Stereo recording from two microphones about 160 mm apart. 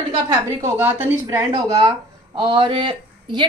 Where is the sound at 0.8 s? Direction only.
10° right (ahead or behind).